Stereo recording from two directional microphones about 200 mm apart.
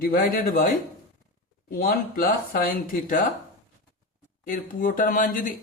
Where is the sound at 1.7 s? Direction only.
45° left (ahead or behind).